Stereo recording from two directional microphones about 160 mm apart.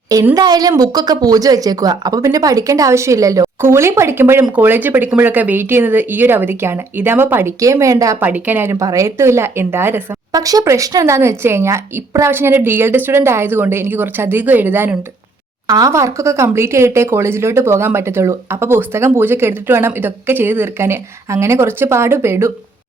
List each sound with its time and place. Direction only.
0.3 s speech: 25° right (ahead or behind)